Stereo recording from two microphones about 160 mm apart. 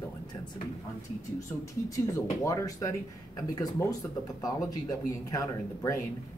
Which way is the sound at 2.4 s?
20° left (ahead or behind).